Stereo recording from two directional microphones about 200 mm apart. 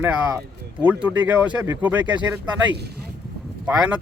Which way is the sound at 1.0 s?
10° right (ahead or behind).